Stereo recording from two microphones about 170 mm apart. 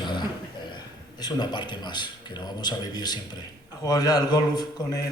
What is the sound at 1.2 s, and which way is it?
A man's voice, 25° left (ahead or behind).